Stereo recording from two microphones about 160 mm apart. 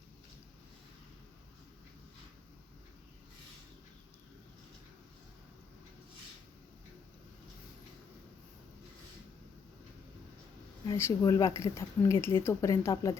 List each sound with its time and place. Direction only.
10.9 s speech: 15° left (ahead or behind)